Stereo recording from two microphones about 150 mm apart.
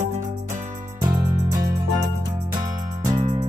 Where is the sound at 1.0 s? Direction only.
20° right (ahead or behind).